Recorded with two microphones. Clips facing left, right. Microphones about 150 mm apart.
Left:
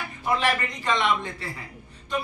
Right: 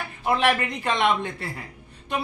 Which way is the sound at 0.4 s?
60° right (ahead or behind).